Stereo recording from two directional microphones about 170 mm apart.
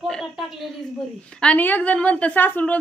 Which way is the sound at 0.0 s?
Centre (ahead or behind).